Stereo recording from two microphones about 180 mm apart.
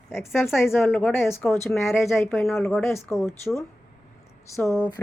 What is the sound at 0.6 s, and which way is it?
A woman's voice, 10° left (ahead or behind).